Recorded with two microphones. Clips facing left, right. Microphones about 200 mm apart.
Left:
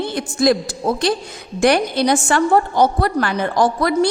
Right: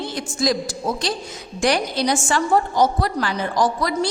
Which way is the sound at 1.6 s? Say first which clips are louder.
Left 5 dB; 55° left (ahead or behind).